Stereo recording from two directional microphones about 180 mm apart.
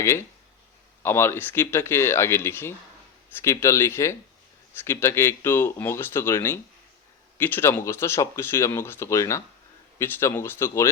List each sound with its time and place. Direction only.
0.0 s speech: 15° left (ahead or behind)